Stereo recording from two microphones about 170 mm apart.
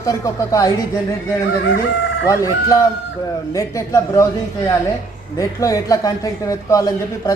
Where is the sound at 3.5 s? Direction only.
20° left (ahead or behind).